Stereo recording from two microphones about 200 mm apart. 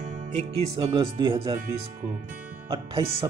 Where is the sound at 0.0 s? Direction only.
35° right (ahead or behind).